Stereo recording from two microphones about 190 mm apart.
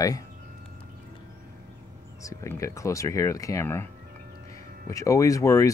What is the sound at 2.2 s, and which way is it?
Speech, 15° left (ahead or behind).